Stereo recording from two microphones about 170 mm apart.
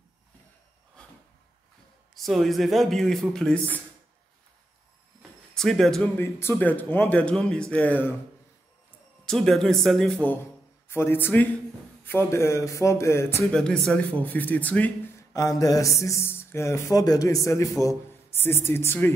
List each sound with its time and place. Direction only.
2.1 s speech: centre (ahead or behind)
5.5 s speech: 5° left (ahead or behind)
6.1 s speech: 15° left (ahead or behind)
9.2 s speech: 5° left (ahead or behind)
13.6 s speech: 5° left (ahead or behind)
15.3 s speech: 20° left (ahead or behind)